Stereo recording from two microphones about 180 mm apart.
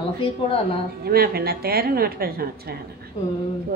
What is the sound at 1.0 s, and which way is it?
A woman's voice, 60° right (ahead or behind).